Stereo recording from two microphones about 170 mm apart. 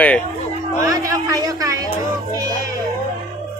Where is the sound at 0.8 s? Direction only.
20° right (ahead or behind).